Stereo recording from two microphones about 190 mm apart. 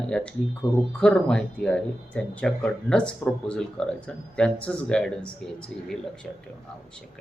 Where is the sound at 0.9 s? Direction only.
5° left (ahead or behind).